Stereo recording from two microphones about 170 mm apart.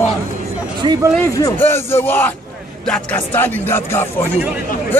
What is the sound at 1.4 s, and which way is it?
Speech, 15° left (ahead or behind).